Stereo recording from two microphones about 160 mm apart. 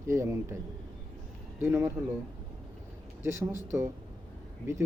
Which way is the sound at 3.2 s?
15° right (ahead or behind).